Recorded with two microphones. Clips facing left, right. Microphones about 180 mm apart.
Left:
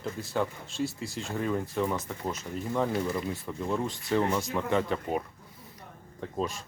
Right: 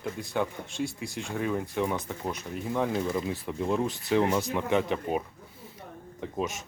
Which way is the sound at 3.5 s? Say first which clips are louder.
Right 4 dB; 15° right (ahead or behind).